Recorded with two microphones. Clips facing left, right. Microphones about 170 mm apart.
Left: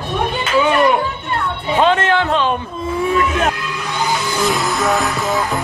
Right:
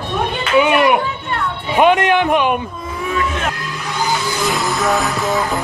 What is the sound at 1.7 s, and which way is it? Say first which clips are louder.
Speech: right 2 dB; 15° right (ahead or behind).